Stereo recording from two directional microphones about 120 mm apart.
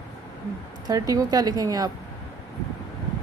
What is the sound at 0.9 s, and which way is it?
Speech, 30° right (ahead or behind).